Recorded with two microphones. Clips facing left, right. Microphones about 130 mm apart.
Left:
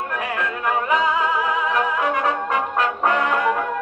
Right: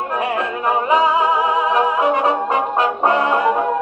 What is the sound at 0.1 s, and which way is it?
Music, 35° right (ahead or behind).